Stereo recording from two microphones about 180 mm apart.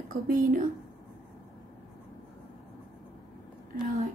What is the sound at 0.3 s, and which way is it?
Speech, 50° right (ahead or behind).